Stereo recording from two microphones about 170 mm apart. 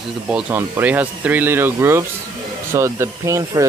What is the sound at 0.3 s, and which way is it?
Speech, 5° right (ahead or behind).